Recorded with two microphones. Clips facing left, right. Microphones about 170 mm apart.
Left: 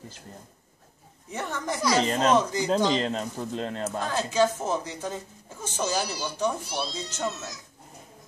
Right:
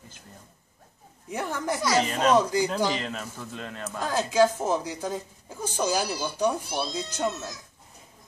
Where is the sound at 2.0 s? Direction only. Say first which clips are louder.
Even; 30° left (ahead or behind).